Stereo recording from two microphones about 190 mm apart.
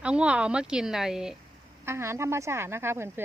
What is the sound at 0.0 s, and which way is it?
A woman's voice, 5° right (ahead or behind).